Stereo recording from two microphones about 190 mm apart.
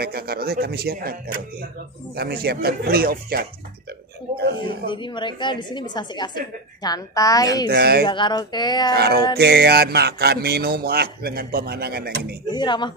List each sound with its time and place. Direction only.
0.0 s a man's voice: 55° right (ahead or behind)
4.9 s a woman's voice: 25° left (ahead or behind)
7.7 s a man's voice: 55° right (ahead or behind)
8.1 s a woman's voice: 25° left (ahead or behind)
8.9 s a man's voice: 55° right (ahead or behind)
12.4 s a woman's voice: 25° left (ahead or behind)